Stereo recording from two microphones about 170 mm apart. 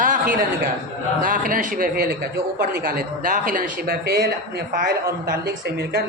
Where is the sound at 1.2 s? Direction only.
55° right (ahead or behind).